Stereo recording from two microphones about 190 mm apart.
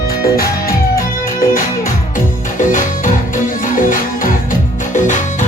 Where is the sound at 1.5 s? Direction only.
45° left (ahead or behind).